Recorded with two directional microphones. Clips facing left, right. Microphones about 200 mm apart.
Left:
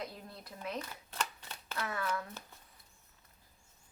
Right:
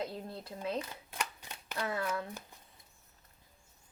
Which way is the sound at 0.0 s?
25° right (ahead or behind).